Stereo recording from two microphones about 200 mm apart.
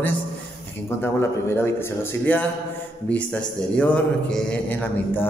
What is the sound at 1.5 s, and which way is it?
Speech, 10° left (ahead or behind).